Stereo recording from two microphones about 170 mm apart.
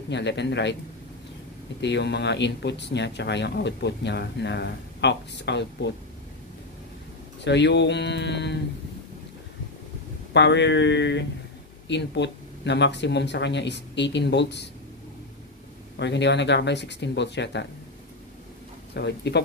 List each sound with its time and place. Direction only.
0.1 s speech: 90° left
1.8 s speech: 90° left
7.4 s speech: 90° left
10.3 s speech: 90° left
16.0 s speech: 90° left
18.9 s speech: 80° left